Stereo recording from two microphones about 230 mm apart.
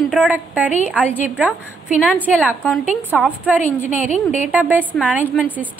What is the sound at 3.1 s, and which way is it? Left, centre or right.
Speech, centre.